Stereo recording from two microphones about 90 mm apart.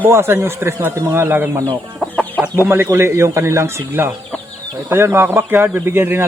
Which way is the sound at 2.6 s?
25° right (ahead or behind).